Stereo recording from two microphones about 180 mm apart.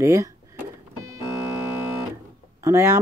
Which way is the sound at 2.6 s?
15° right (ahead or behind).